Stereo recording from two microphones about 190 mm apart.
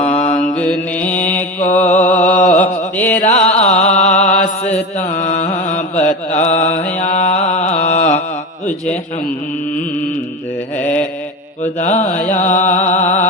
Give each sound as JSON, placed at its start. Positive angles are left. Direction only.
{"t": 0.0, "sound": "mantra", "side_deg": 35}
{"t": 0.5, "sound": "mantra", "side_deg": 5}
{"t": 1.8, "sound": "a sound", "side_deg": 40}
{"t": 3.2, "sound": "music", "side_deg": 40}
{"t": 3.9, "sound": "mantra", "side_deg": 40}
{"t": 4.9, "sound": "music", "side_deg": 40}
{"t": 6.0, "sound": "mantra", "side_deg": 10}
{"t": 6.5, "sound": "mantra", "side_deg": 35}
{"t": 6.8, "sound": "music", "side_deg": 5}
{"t": 7.2, "sound": "music", "side_deg": 35}
{"t": 10.8, "sound": "mantra", "side_deg": 10}
{"t": 11.6, "sound": "mantra", "side_deg": 40}
{"t": 12.5, "sound": "music", "side_deg": 40}